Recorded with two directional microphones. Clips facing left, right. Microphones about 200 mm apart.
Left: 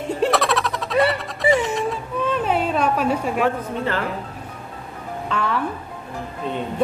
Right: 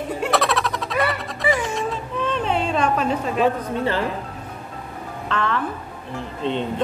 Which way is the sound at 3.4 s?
20° right (ahead or behind).